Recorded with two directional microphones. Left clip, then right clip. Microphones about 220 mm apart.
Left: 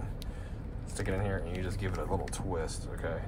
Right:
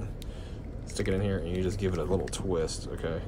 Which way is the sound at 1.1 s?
25° right (ahead or behind).